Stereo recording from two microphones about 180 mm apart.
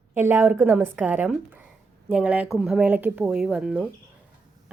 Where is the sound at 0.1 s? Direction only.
10° right (ahead or behind).